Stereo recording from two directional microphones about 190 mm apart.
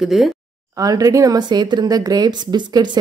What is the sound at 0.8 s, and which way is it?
Speech, 20° right (ahead or behind).